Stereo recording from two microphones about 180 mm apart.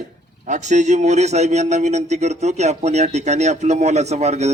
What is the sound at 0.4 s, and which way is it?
A man's voice, 40° right (ahead or behind).